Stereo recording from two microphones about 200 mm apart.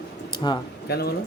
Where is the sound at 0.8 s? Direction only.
50° left (ahead or behind).